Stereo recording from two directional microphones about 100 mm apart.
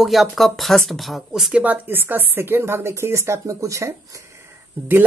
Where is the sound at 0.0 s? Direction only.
Centre (ahead or behind); by 3.9 s 30° right (ahead or behind).